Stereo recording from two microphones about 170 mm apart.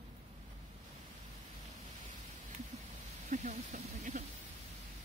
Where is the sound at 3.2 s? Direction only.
45° right (ahead or behind).